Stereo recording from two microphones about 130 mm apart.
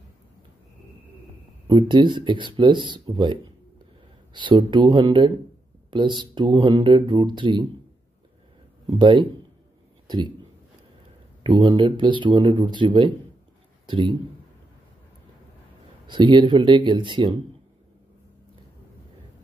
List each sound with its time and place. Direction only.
1.7 s speech: 35° right (ahead or behind)
8.8 s speech: 35° right (ahead or behind)
11.4 s speech: 40° right (ahead or behind)
16.1 s speech: 35° right (ahead or behind)